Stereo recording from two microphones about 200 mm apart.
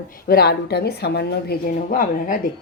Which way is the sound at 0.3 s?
50° left (ahead or behind).